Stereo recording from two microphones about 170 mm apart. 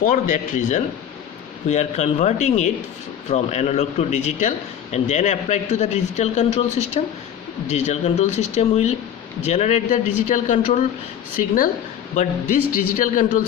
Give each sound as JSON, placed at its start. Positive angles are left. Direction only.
{"t": 0.0, "sound": "a man's voice", "side_deg": 55}
{"t": 12.1, "sound": "a man's voice", "side_deg": 50}